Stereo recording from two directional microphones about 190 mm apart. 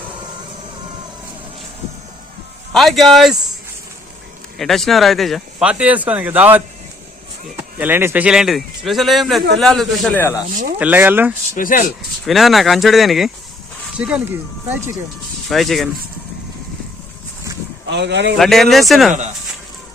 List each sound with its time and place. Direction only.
2.7 s speech: centre (ahead or behind)
4.5 s speech: centre (ahead or behind)
10.8 s speech: 10° right (ahead or behind)
11.5 s speech: 45° left (ahead or behind)
12.2 s speech: centre (ahead or behind)
15.4 s speech: centre (ahead or behind)
17.8 s speech: 65° right (ahead or behind)
18.3 s speech: centre (ahead or behind)